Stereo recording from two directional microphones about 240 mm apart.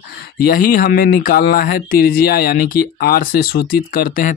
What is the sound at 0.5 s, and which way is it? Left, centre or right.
Speech, left.